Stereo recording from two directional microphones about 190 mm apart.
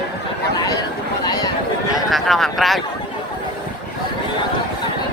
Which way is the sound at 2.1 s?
Centre (ahead or behind).